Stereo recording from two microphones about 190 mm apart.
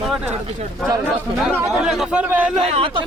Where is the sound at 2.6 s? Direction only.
30° right (ahead or behind).